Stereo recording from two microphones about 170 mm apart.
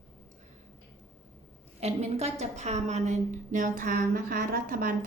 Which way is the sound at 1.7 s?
40° right (ahead or behind).